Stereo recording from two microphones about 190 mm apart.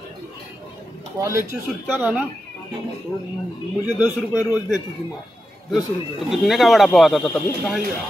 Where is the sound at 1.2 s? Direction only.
15° right (ahead or behind).